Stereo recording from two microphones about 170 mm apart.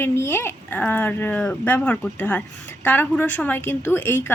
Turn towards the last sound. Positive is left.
turn(degrees=15)  # may be behind; listen again after turning